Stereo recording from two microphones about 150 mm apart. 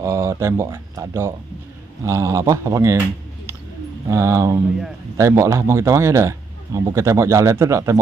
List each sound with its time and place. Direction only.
0.0 s a man's voice: 20° right (ahead or behind)
4.1 s a man's voice: 20° right (ahead or behind)